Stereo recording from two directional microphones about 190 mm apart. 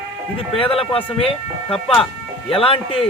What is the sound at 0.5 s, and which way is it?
Speech, 30° left (ahead or behind).